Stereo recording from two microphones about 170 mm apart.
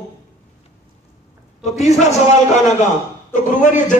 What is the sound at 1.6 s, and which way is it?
Speech, 40° left (ahead or behind).